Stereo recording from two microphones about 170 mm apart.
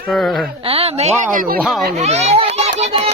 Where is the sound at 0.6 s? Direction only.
35° right (ahead or behind).